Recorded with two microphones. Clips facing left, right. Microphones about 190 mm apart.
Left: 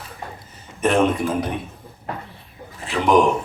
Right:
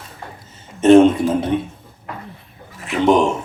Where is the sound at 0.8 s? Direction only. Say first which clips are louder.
Right 10 dB; 25° right (ahead or behind).